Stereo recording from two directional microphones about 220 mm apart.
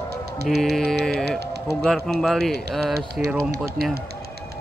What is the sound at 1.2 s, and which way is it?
Speech, 50° right (ahead or behind).